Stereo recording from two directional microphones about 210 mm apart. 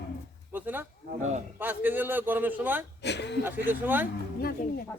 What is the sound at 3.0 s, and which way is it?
Speech, 55° left (ahead or behind).